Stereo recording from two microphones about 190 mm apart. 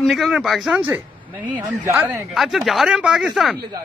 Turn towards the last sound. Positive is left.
turn(degrees=-5)  # may be behind; listen again after turning